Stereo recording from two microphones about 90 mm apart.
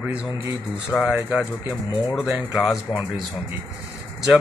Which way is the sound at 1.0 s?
5° right (ahead or behind).